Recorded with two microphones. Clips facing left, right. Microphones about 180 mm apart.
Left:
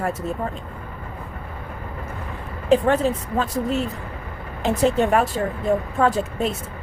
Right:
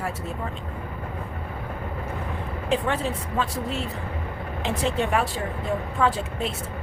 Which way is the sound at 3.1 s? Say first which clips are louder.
Left 6 dB; 40° left (ahead or behind).